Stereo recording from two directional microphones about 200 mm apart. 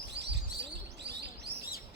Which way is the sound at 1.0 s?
55° right (ahead or behind).